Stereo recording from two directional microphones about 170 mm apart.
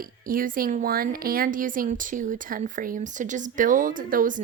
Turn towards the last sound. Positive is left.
turn(degrees=-55)  # may be behind; listen again after turning